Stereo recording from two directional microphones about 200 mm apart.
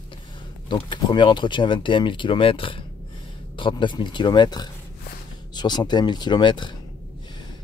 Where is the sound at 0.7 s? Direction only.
25° left (ahead or behind).